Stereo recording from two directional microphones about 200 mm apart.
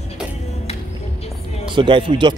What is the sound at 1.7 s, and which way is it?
Speech, 25° right (ahead or behind).